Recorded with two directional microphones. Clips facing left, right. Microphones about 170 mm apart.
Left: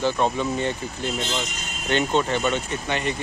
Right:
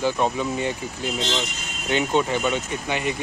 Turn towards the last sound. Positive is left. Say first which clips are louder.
# even
turn(degrees=-10)  # may be behind; listen again after turning